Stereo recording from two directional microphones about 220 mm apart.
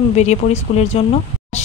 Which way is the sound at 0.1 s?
30° left (ahead or behind).